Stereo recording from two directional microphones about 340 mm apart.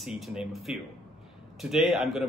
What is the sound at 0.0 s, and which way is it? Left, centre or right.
Speech, centre.